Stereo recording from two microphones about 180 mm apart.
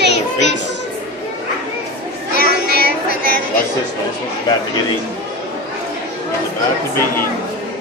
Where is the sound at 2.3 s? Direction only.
55° left (ahead or behind).